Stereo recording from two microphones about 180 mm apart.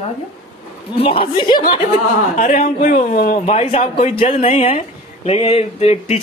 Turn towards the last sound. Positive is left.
turn(degrees=35)  # may be behind; listen again after turning